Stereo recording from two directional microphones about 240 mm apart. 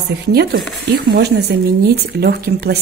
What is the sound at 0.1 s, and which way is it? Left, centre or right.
Speech, right.